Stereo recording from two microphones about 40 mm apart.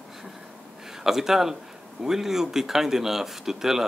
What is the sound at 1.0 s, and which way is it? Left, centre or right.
A man's voice, centre.